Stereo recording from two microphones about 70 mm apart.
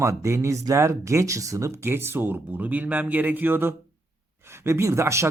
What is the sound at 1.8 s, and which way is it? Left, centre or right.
Speech, right.